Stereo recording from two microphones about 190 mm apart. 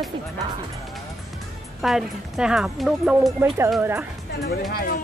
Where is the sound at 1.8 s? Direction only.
Centre (ahead or behind).